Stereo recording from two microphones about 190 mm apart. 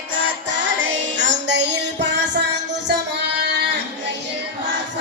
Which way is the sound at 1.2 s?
65° right (ahead or behind).